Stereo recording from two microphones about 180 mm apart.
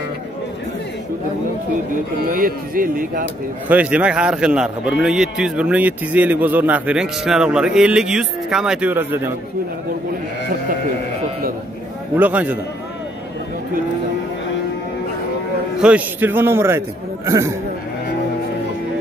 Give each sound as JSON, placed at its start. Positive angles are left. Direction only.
{"t": 2.2, "sound": "speech", "side_deg": -55}
{"t": 3.6, "sound": "a man's voice", "side_deg": -10}
{"t": 12.2, "sound": "a man's voice", "side_deg": -10}
{"t": 15.8, "sound": "a man's voice", "side_deg": -10}